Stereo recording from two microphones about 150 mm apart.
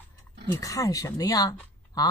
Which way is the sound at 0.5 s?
20° left (ahead or behind).